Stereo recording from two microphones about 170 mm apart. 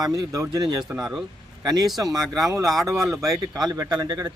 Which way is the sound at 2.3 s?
20° right (ahead or behind).